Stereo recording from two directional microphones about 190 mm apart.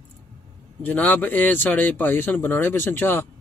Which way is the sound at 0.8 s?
10° left (ahead or behind).